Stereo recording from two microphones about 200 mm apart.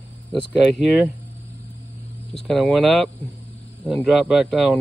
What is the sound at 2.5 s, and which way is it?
Speech, centre (ahead or behind).